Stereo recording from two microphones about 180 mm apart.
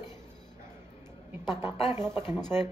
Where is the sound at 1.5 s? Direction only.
15° right (ahead or behind).